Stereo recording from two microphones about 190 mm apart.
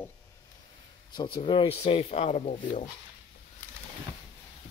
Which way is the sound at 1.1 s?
25° left (ahead or behind).